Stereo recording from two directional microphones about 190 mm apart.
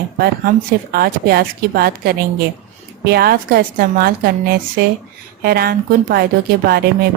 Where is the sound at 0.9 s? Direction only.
55° right (ahead or behind).